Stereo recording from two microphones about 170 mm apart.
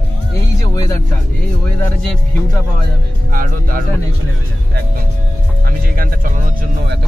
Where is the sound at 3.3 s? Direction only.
55° right (ahead or behind).